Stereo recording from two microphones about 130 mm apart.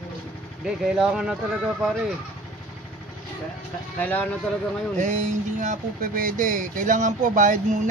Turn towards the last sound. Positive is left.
turn(degrees=-75)  # may be behind; listen again after turning